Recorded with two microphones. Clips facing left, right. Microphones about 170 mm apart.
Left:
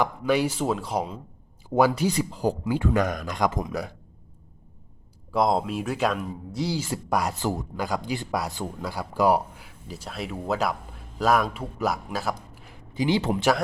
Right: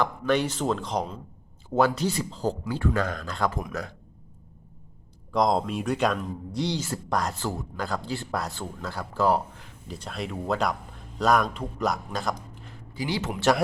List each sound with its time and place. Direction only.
0.0 s speech: 10° left (ahead or behind)
5.3 s speech: 5° left (ahead or behind)
12.9 s speech: 20° left (ahead or behind)